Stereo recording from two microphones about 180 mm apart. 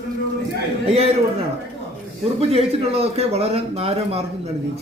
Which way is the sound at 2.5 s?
35° right (ahead or behind).